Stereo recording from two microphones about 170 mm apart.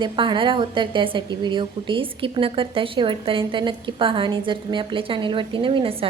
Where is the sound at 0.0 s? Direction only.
30° right (ahead or behind).